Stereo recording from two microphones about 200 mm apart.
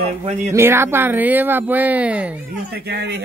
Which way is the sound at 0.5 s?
10° right (ahead or behind).